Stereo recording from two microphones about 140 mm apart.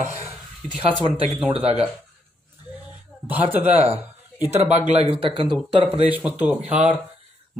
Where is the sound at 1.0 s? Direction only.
45° right (ahead or behind).